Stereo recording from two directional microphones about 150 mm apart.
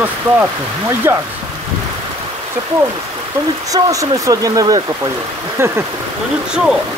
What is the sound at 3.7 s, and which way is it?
Speech, 25° right (ahead or behind).